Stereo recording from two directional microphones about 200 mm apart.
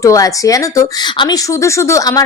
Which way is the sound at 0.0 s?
15° left (ahead or behind).